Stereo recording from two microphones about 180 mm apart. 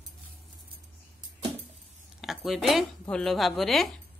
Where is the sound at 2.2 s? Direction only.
Centre (ahead or behind).